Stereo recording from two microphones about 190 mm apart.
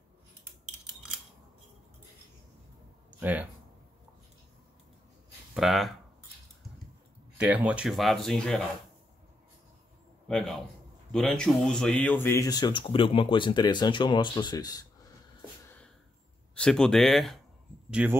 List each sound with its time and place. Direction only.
3.1 s a sound: 10° right (ahead or behind)
5.5 s speech: centre (ahead or behind)
7.3 s speech: 10° right (ahead or behind)
10.2 s a man's voice: centre (ahead or behind); by 14.9 s 20° left (ahead or behind)
16.5 s speech: 5° left (ahead or behind)